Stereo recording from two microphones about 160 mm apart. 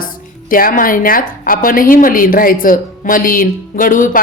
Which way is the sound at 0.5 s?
60° left (ahead or behind).